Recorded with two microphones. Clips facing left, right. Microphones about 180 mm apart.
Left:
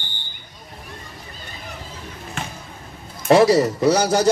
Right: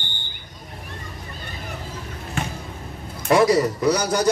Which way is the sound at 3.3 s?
25° left (ahead or behind).